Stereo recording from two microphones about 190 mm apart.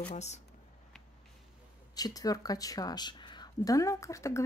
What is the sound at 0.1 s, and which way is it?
Speech, 35° left (ahead or behind).